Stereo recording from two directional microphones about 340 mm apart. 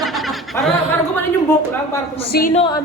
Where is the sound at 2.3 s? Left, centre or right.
Left.